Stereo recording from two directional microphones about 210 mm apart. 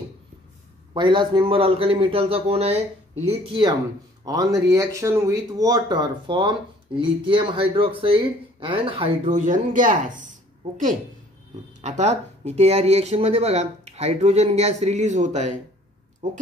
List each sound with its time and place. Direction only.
0.9 s a man's voice: 20° right (ahead or behind)
11.8 s speech: 30° right (ahead or behind)